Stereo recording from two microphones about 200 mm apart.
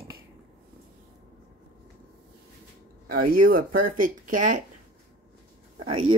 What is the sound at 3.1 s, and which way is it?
Speech, 45° right (ahead or behind).